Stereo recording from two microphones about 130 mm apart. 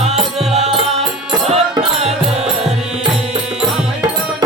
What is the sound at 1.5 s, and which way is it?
Music, 50° right (ahead or behind).